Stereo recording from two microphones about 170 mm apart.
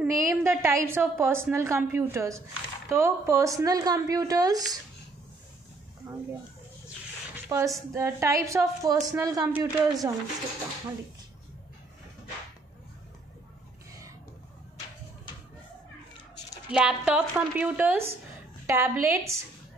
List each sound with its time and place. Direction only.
0.0 s a woman's voice: 15° right (ahead or behind)
7.4 s a woman's voice: 15° right (ahead or behind)
16.7 s a woman's voice: 5° right (ahead or behind)